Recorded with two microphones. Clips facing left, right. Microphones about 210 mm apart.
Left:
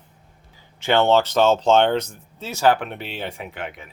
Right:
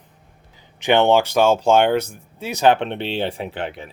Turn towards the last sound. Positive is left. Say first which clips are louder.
# right 5 dB
turn(degrees=-30)  # may be behind; listen again after turning